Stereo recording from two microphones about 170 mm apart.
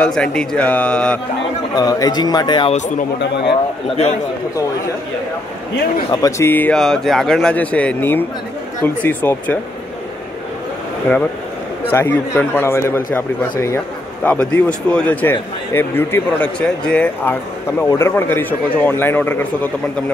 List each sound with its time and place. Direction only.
0.0 s a man's voice: 5° left (ahead or behind)
1.8 s speech: 20° left (ahead or behind)
6.2 s speech: 15° left (ahead or behind)
11.9 s speech: 10° left (ahead or behind)